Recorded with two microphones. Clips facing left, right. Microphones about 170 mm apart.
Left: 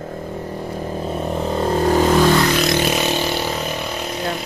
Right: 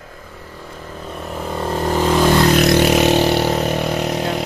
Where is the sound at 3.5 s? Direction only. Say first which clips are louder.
Right 6 dB; 55° right (ahead or behind); by 4.4 s 75° right (ahead or behind).